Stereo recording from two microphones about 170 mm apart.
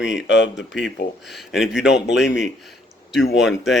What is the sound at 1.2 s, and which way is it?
Speech, centre (ahead or behind).